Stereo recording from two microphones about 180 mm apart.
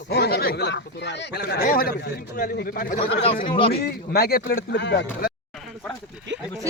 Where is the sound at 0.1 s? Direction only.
60° left (ahead or behind).